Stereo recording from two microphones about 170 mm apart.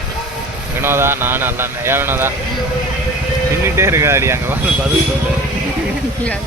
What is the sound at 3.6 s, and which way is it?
Speech, 15° right (ahead or behind).